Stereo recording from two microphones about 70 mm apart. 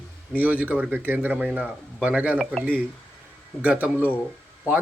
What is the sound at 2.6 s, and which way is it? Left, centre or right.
Speech, centre.